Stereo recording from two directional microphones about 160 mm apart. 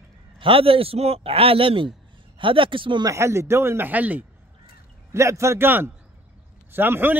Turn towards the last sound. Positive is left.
turn(degrees=-10)  # may be behind; listen again after turning